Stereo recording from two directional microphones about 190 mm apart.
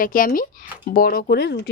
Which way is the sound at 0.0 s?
45° left (ahead or behind).